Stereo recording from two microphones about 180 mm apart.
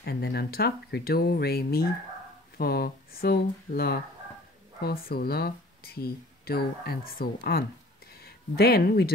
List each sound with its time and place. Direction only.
0.0 s speech: 60° left (ahead or behind)